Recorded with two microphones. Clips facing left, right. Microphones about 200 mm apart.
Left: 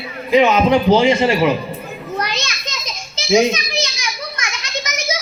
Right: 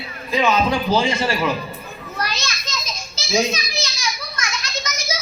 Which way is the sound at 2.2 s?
20° left (ahead or behind).